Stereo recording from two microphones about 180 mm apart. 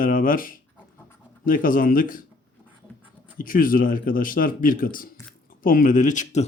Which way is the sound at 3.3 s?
50° left (ahead or behind).